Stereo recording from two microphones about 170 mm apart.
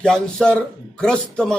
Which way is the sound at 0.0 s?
5° left (ahead or behind).